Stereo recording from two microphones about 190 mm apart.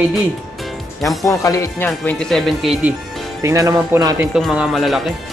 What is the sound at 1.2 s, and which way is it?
Speech, 15° left (ahead or behind).